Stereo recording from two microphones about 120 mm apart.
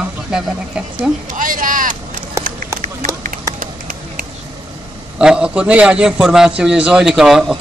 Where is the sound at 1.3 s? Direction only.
90° right.